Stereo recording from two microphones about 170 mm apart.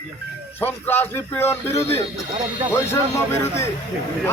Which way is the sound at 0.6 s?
10° left (ahead or behind).